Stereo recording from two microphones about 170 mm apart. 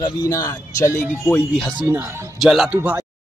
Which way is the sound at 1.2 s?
5° left (ahead or behind).